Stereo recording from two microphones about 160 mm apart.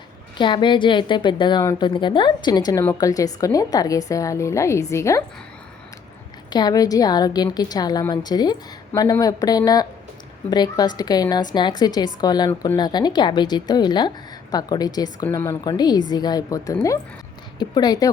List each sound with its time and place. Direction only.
0.3 s a woman's voice: 30° left (ahead or behind)
6.5 s a woman's voice: 25° left (ahead or behind)